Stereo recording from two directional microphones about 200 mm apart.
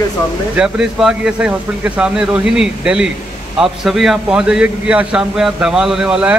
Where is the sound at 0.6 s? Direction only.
5° right (ahead or behind).